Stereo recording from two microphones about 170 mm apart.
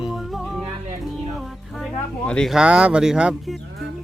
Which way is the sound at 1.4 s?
Centre (ahead or behind).